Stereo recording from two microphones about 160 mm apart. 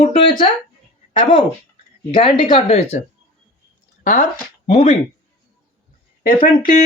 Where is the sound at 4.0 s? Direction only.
55° left (ahead or behind).